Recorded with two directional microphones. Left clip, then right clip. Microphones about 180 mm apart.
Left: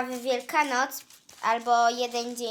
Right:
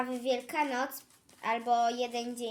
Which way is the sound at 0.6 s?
5° right (ahead or behind).